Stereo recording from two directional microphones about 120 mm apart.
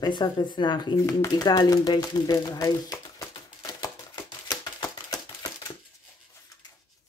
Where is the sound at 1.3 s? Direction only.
35° left (ahead or behind).